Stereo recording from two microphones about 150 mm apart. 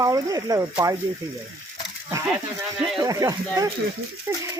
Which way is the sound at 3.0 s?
25° right (ahead or behind).